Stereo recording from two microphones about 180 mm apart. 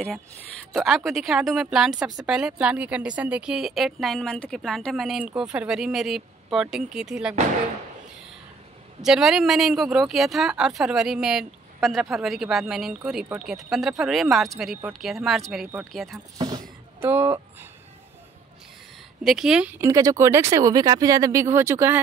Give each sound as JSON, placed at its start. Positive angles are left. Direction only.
{"t": 0.7, "sound": "speech", "side_deg": 0}
{"t": 9.0, "sound": "speech", "side_deg": 0}
{"t": 16.3, "sound": "speech", "side_deg": -20}
{"t": 19.2, "sound": "speech", "side_deg": -5}